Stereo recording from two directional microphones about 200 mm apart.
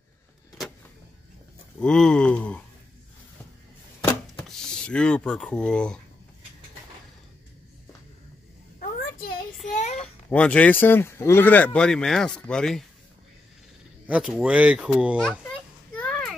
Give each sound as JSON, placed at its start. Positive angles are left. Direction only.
{"t": 1.8, "sound": "speech", "side_deg": 5}
{"t": 4.0, "sound": "a sound", "side_deg": 5}
{"t": 9.7, "sound": "child singing", "side_deg": 35}
{"t": 9.9, "sound": "speech", "side_deg": 5}
{"t": 14.0, "sound": "speech", "side_deg": -5}
{"t": 15.9, "sound": "a sound", "side_deg": 5}